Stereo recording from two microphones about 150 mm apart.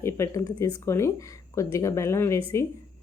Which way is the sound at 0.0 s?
20° left (ahead or behind).